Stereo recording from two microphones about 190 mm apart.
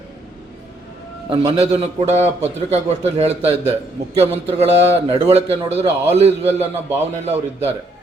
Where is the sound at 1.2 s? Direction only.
30° right (ahead or behind).